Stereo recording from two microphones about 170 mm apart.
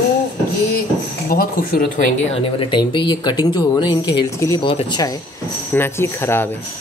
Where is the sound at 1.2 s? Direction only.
60° left (ahead or behind).